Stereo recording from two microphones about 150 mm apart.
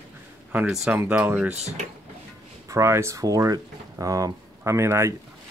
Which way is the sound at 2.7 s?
20° right (ahead or behind).